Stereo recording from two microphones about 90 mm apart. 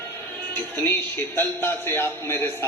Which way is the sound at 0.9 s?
25° left (ahead or behind).